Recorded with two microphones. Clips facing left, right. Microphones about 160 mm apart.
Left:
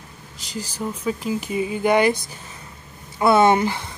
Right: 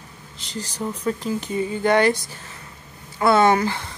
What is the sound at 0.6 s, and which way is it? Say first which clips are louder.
Speech: even; 5° left (ahead or behind).